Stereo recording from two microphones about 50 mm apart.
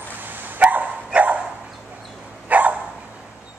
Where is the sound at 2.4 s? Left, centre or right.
Right.